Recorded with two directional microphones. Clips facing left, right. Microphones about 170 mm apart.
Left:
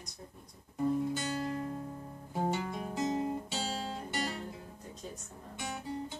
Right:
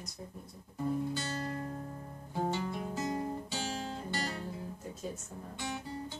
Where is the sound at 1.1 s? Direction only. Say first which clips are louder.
Left 2 dB; 20° left (ahead or behind).